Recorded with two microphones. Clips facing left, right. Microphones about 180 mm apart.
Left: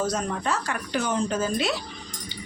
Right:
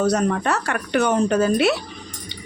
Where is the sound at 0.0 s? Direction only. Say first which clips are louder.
Right 7 dB; 70° right (ahead or behind).